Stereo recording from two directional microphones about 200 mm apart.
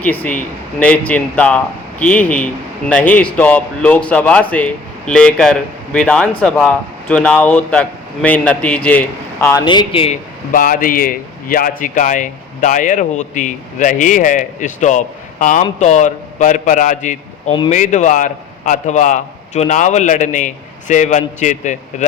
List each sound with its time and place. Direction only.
0.0 s a man's voice: 10° left (ahead or behind); by 10.2 s 30° left (ahead or behind)
10.5 s a man's voice: 45° left (ahead or behind)